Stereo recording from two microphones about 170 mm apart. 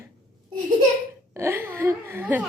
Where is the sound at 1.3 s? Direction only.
15° right (ahead or behind).